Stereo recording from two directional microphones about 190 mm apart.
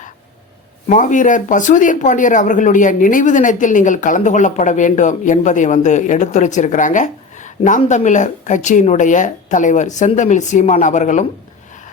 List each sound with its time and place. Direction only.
0.9 s speech: 40° left (ahead or behind)